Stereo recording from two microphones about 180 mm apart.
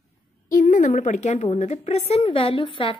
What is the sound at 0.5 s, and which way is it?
A woman's voice, 50° left (ahead or behind).